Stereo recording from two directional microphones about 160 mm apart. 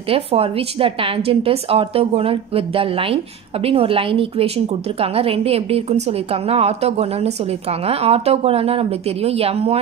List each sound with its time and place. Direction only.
0.1 s a woman's voice: 35° right (ahead or behind)